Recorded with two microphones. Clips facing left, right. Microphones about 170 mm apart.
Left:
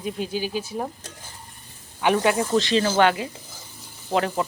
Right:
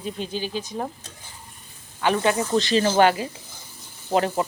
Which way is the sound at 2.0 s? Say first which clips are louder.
Left 1 dB; 15° left (ahead or behind).